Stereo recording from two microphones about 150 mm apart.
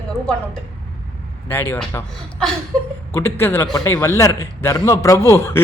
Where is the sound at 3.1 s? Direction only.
15° left (ahead or behind).